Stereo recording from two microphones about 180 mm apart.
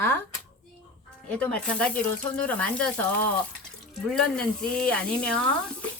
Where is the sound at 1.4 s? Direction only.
5° left (ahead or behind).